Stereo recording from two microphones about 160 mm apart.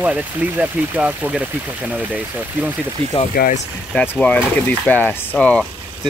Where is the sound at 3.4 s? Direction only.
80° left.